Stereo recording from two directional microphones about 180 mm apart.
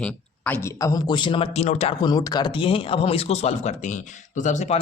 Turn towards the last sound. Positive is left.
turn(degrees=40)  # may be behind; listen again after turning